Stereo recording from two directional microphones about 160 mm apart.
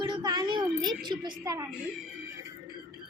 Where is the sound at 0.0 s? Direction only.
25° right (ahead or behind).